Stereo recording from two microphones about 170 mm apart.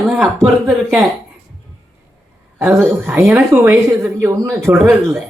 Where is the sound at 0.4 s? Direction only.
Centre (ahead or behind).